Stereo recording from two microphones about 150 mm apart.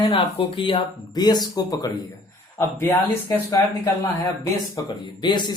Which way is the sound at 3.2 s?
25° left (ahead or behind).